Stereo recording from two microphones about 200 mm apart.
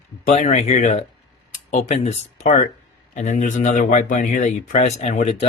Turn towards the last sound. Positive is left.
turn(degrees=35)  # may be behind; listen again after turning